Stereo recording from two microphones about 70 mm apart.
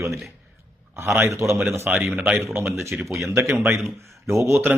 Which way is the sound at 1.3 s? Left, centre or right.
Right.